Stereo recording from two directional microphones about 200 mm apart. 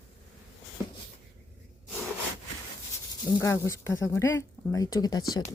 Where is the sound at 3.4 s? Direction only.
15° left (ahead or behind).